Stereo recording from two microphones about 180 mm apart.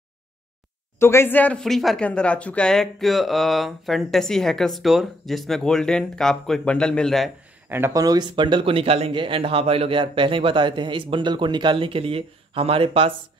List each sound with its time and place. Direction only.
0.9 s speech: 15° left (ahead or behind)
7.7 s speech: 15° right (ahead or behind)